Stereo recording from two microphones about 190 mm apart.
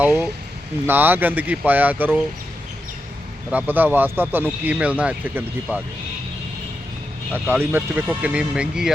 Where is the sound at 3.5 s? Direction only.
10° right (ahead or behind).